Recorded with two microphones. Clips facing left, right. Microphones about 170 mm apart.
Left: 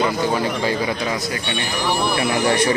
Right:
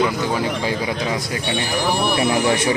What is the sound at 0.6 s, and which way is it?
Speech, 10° right (ahead or behind).